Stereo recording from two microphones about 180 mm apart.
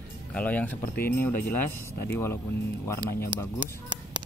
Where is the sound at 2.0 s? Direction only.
15° left (ahead or behind).